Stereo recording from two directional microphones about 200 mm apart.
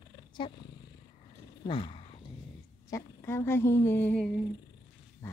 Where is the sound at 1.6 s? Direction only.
25° left (ahead or behind).